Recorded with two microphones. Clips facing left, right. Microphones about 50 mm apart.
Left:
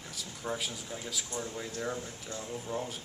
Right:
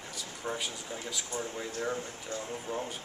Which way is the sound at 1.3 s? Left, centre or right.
Centre.